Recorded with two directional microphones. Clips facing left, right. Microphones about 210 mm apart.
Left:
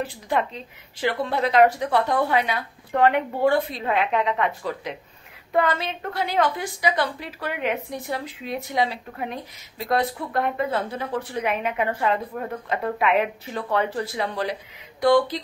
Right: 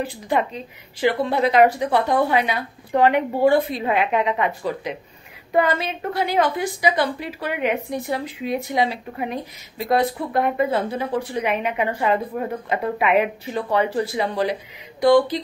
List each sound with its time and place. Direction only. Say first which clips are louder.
0.0 s a woman's voice: right 3 dB; 5° right (ahead or behind)